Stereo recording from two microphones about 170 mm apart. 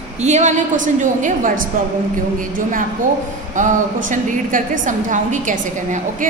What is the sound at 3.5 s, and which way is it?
A woman's voice, 50° right (ahead or behind).